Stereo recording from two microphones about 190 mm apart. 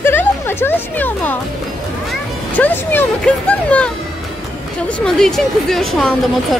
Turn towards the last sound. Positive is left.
turn(degrees=0)  # may be behind; listen again after turning